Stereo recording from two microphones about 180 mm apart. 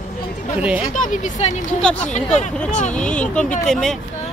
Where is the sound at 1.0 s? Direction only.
40° left (ahead or behind).